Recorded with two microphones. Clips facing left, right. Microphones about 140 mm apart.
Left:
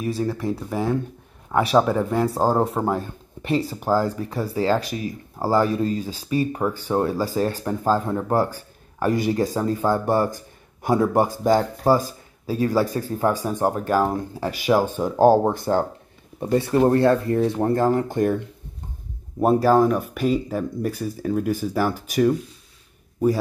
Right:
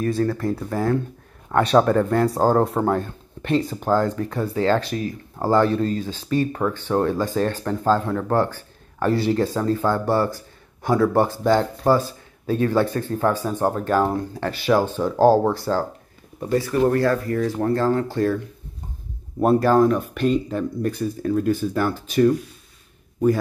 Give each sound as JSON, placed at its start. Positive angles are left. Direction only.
{"t": 0.3, "sound": "a man's voice", "side_deg": 5}
{"t": 19.4, "sound": "a man's voice", "side_deg": 5}